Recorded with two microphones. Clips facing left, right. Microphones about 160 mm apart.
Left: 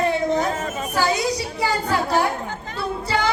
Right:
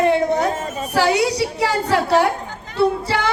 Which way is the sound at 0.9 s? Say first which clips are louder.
Right 5 dB; 70° right (ahead or behind).